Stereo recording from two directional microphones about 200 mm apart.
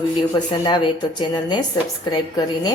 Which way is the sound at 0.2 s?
20° left (ahead or behind).